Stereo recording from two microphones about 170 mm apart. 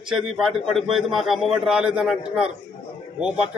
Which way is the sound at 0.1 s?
Centre (ahead or behind).